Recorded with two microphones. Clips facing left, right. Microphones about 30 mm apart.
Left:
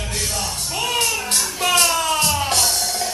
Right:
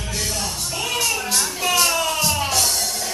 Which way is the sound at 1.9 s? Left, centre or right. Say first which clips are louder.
Left 2 dB; left.